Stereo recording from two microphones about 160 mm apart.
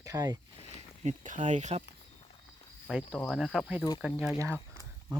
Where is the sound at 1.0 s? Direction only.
50° right (ahead or behind).